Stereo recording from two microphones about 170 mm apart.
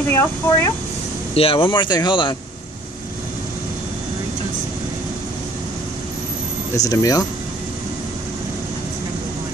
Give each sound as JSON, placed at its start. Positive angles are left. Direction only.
{"t": 0.1, "sound": "speech", "side_deg": 15}
{"t": 1.3, "sound": "speech", "side_deg": 35}
{"t": 6.8, "sound": "speech", "side_deg": 20}